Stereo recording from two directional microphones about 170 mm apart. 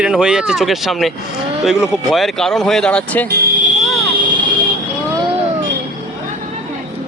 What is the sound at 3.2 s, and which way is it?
Speech, 70° right (ahead or behind).